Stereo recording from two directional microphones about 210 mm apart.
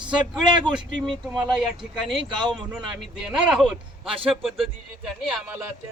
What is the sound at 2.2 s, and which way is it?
Speech, 20° right (ahead or behind).